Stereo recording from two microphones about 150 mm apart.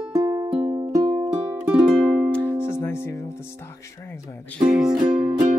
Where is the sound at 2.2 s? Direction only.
10° left (ahead or behind).